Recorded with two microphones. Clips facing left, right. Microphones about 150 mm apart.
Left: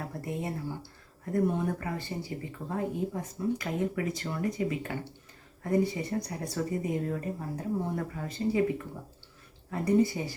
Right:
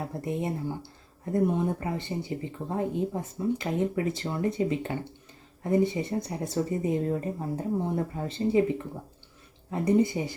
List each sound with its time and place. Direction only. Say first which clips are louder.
0.0 s speech: right 4 dB; 20° right (ahead or behind)
9.6 s speech: right 2 dB; 20° right (ahead or behind)